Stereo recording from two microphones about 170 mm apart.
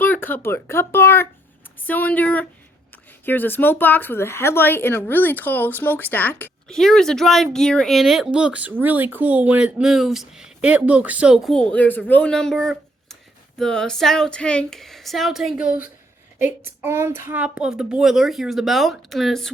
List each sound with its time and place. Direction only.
0.0 s speech: 10° left (ahead or behind)